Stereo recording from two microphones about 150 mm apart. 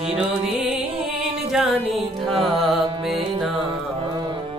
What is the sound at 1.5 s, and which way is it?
Music, centre (ahead or behind).